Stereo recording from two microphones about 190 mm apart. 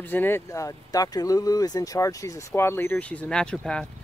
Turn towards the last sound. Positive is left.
turn(degrees=5)  # may be behind; listen again after turning